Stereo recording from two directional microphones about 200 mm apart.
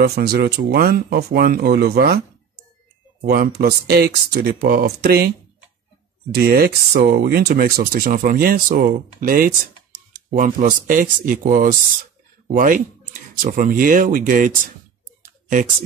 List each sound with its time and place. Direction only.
0.0 s speech: 50° right (ahead or behind)
3.2 s speech: 50° right (ahead or behind)
6.3 s speech: 50° right (ahead or behind)